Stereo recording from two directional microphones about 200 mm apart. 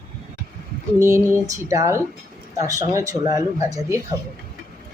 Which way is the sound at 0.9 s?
15° right (ahead or behind).